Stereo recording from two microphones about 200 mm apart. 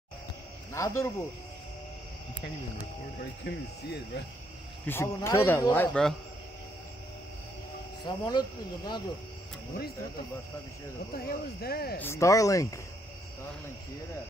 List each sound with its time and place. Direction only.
0.7 s speech: 15° left (ahead or behind)
2.8 s speech: 55° left (ahead or behind)
4.8 s speech: 10° left (ahead or behind)
8.0 s speech: 20° left (ahead or behind)
11.2 s speech: 50° left (ahead or behind)
12.0 s speech: 15° left (ahead or behind)